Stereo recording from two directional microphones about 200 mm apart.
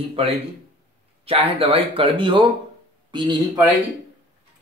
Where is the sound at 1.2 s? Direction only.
30° right (ahead or behind).